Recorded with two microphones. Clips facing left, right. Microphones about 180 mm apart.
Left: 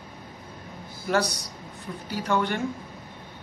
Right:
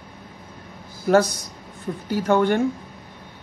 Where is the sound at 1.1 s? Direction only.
50° right (ahead or behind).